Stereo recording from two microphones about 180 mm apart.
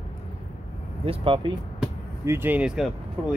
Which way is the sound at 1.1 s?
30° right (ahead or behind).